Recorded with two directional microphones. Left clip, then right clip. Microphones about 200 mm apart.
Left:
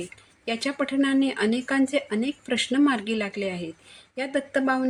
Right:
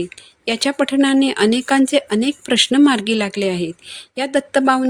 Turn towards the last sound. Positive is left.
turn(degrees=-50)  # may be behind; listen again after turning